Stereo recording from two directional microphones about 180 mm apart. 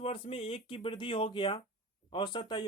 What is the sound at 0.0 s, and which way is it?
Speech, 35° left (ahead or behind).